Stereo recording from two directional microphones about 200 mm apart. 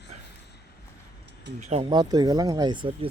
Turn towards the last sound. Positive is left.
turn(degrees=-25)  # may be behind; listen again after turning